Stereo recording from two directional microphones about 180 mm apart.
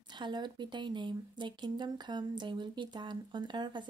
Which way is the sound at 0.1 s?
25° right (ahead or behind).